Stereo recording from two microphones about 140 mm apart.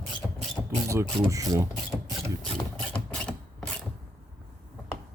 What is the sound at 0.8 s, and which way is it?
Speech, 20° right (ahead or behind).